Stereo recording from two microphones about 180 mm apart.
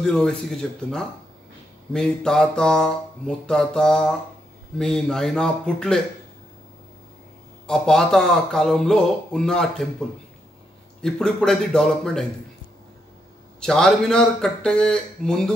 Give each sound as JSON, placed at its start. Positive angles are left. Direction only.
{"t": 0.0, "sound": "speech", "side_deg": 0}
{"t": 7.6, "sound": "speech", "side_deg": 5}
{"t": 13.6, "sound": "speech", "side_deg": 5}